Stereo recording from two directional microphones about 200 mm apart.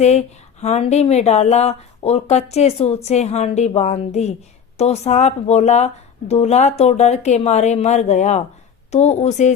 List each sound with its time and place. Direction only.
0.0 s speech: 35° left (ahead or behind)